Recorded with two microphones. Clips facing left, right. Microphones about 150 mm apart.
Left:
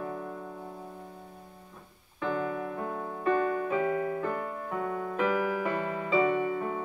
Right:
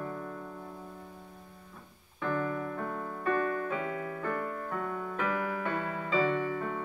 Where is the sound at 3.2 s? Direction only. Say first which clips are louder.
Left 3 dB; 20° left (ahead or behind).